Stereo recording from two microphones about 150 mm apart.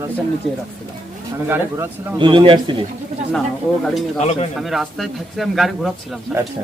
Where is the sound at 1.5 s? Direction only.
15° right (ahead or behind).